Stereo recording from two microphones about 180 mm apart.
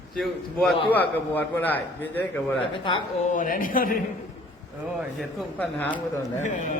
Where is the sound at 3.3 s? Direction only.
50° left (ahead or behind).